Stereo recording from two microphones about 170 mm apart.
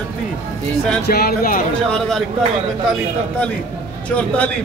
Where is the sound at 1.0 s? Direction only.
65° left (ahead or behind).